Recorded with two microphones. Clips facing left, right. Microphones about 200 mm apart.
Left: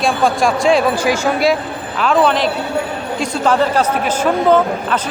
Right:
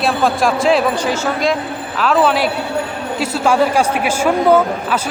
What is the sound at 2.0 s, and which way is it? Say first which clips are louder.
Speech: even; 5° right (ahead or behind).